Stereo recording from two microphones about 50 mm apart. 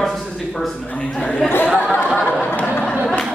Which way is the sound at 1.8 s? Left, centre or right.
Left.